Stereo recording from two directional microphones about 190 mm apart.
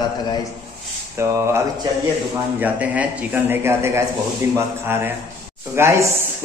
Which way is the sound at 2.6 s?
10° right (ahead or behind).